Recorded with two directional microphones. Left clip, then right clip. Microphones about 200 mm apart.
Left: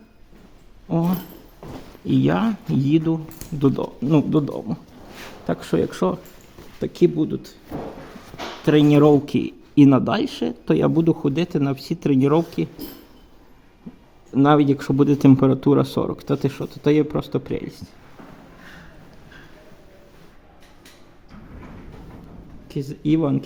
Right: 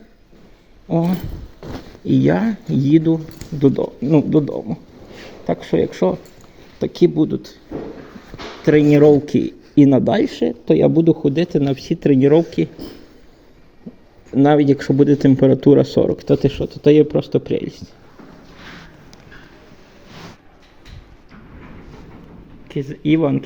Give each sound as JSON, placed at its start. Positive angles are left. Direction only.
{"t": 2.2, "sound": "speech", "side_deg": -5}
{"t": 8.6, "sound": "speech", "side_deg": 0}
{"t": 14.3, "sound": "speech", "side_deg": 0}
{"t": 22.7, "sound": "speech", "side_deg": 15}